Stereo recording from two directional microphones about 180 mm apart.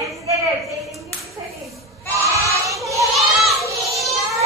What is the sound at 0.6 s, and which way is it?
Clapping, centre (ahead or behind).